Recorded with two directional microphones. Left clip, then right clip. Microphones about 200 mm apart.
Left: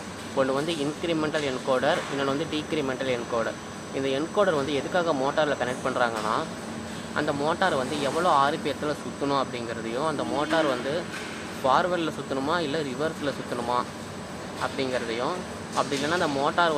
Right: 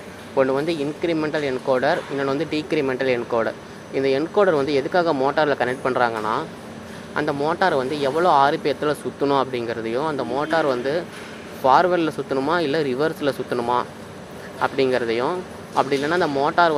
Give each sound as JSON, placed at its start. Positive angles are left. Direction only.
{"t": 0.4, "sound": "speech", "side_deg": -20}